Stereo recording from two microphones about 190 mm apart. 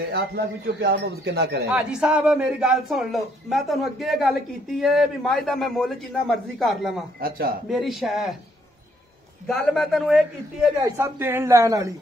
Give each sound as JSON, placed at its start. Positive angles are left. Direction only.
{"t": 0.1, "sound": "a man's voice", "side_deg": -60}
{"t": 1.9, "sound": "speech", "side_deg": -5}
{"t": 7.2, "sound": "a man's voice", "side_deg": -50}
{"t": 7.7, "sound": "speech", "side_deg": 0}
{"t": 9.5, "sound": "speech", "side_deg": 0}
{"t": 10.8, "sound": "speech", "side_deg": -10}